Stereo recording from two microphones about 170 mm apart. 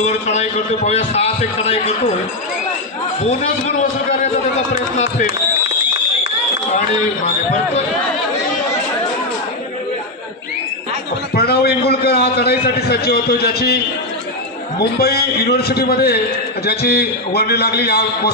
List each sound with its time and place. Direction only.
0.0 s a man's voice: 40° left (ahead or behind)
3.3 s a man's voice: 40° left (ahead or behind)
11.3 s a sound: 65° left (ahead or behind)
15.0 s a man's voice: 65° left (ahead or behind)